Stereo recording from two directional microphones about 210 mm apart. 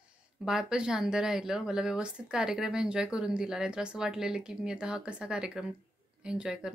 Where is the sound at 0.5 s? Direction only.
5° right (ahead or behind).